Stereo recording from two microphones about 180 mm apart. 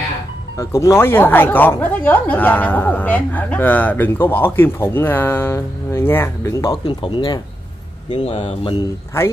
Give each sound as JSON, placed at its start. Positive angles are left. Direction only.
{"t": 0.6, "sound": "speech", "side_deg": 15}
{"t": 9.1, "sound": "speech", "side_deg": 15}